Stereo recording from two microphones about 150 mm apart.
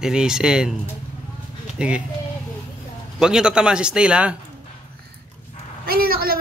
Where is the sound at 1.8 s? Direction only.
5° right (ahead or behind).